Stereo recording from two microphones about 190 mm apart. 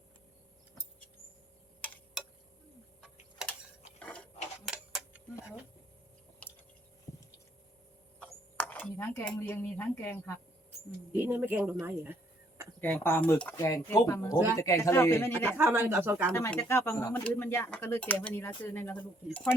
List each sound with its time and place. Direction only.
3.4 s tick-tock: 5° right (ahead or behind)
4.0 s a sound: 5° left (ahead or behind)
7.1 s a sound: 15° left (ahead or behind)
8.2 s speech: 10° left (ahead or behind)
11.1 s speech: 10° right (ahead or behind)
12.8 s speech: 10° left (ahead or behind)
15.5 s speech: 15° right (ahead or behind)
16.3 s speech: 15° left (ahead or behind)